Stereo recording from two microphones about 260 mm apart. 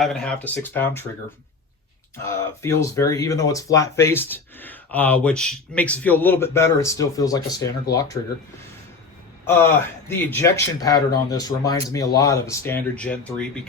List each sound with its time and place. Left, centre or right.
0.0 s speech: centre
2.1 s speech: centre
9.5 s speech: centre